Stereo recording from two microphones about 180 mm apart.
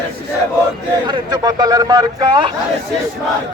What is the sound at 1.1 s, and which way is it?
A man's voice, 25° right (ahead or behind).